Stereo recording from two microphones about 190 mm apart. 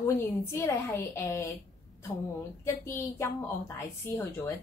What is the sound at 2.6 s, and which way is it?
A woman's voice, 15° left (ahead or behind).